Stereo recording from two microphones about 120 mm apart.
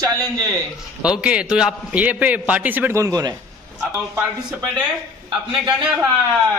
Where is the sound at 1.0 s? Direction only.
10° right (ahead or behind); by 3.3 s 30° right (ahead or behind).